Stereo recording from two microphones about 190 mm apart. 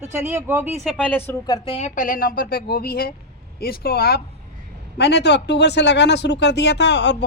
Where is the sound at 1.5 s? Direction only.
30° left (ahead or behind).